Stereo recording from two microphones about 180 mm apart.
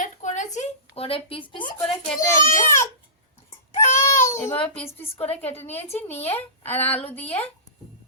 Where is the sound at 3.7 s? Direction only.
15° left (ahead or behind).